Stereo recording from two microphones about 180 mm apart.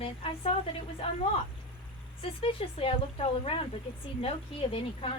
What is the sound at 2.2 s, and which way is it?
Speech, 30° left (ahead or behind).